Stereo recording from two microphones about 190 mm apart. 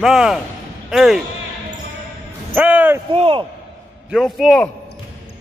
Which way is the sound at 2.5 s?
10° right (ahead or behind).